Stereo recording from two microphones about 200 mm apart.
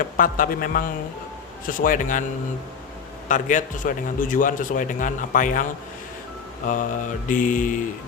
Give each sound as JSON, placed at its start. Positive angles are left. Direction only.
{"t": 0.0, "sound": "a man's voice", "side_deg": 45}
{"t": 3.2, "sound": "a man's voice", "side_deg": 40}
{"t": 6.7, "sound": "a man's voice", "side_deg": 40}